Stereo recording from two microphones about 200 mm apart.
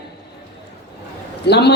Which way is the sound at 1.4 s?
55° left (ahead or behind).